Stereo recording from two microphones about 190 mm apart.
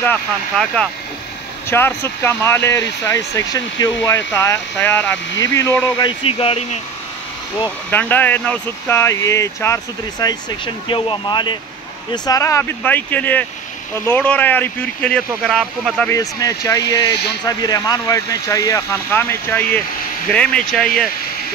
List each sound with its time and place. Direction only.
0.0 s speech: 5° left (ahead or behind)
5.8 s speech: 20° left (ahead or behind)
7.9 s speech: 10° left (ahead or behind)
16.1 s speech: 20° left (ahead or behind)